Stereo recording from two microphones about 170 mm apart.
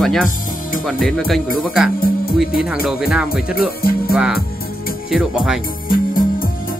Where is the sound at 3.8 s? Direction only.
60° left (ahead or behind).